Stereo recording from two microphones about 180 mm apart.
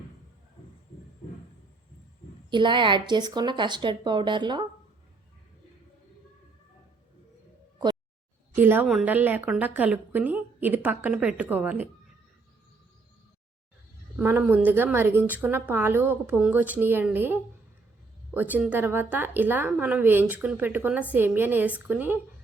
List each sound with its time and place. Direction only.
2.5 s speech: 25° right (ahead or behind)
8.5 s a woman's voice: 10° right (ahead or behind)
14.2 s a woman's voice: 10° right (ahead or behind)